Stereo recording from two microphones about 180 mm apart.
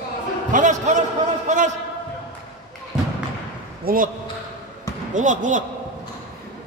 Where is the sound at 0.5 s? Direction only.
40° right (ahead or behind).